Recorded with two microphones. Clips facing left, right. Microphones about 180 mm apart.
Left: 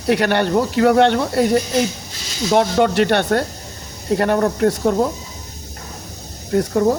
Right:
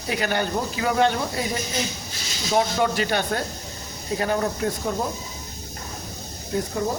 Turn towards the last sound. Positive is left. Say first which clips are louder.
# left 9 dB
turn(degrees=60)  # may be behind; listen again after turning